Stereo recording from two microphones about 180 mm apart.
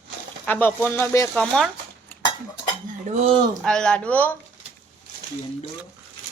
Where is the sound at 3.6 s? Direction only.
5° left (ahead or behind).